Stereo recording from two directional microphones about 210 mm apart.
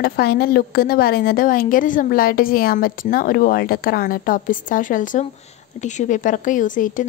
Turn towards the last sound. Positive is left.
turn(degrees=40)  # may be behind; listen again after turning